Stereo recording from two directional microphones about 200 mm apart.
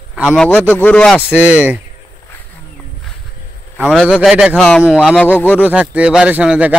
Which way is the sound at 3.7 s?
Centre (ahead or behind).